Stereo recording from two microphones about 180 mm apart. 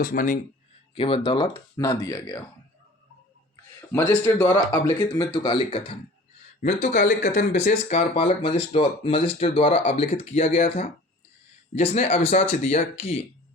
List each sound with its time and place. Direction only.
0.0 s speech: 50° left (ahead or behind)
0.9 s speech: 30° left (ahead or behind)
3.8 s speech: 15° left (ahead or behind)
4.5 s speech: 25° left (ahead or behind)
6.8 s speech: 45° left (ahead or behind)